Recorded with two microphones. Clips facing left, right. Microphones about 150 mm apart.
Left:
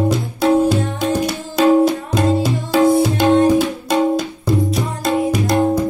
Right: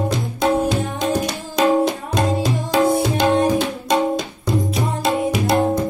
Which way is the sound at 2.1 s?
5° left (ahead or behind).